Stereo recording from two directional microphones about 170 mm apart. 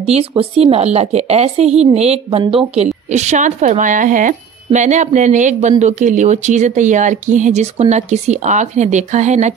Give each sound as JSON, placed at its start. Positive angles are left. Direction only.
{"t": 0.0, "sound": "speech", "side_deg": -35}